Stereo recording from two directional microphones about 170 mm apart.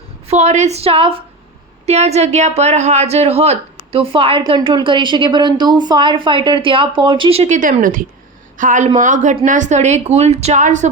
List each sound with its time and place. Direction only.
0.3 s a woman's voice: 40° right (ahead or behind)